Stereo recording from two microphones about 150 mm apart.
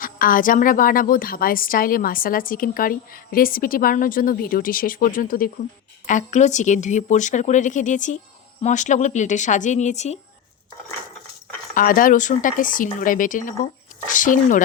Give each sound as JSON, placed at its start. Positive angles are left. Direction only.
{"t": 0.0, "sound": "a woman's voice", "side_deg": 65}
{"t": 6.1, "sound": "a woman's voice", "side_deg": 55}
{"t": 11.7, "sound": "speech", "side_deg": 65}